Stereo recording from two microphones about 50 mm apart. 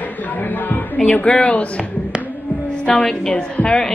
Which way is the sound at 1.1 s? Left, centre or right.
Left.